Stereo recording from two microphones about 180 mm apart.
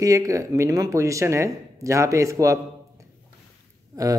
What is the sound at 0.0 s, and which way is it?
Speech, 15° right (ahead or behind).